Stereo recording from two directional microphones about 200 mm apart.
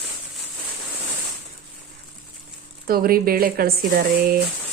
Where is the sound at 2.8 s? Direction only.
50° right (ahead or behind).